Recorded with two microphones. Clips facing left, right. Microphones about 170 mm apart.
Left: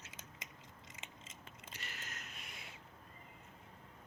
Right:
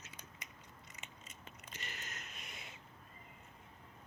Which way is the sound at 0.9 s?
90° left.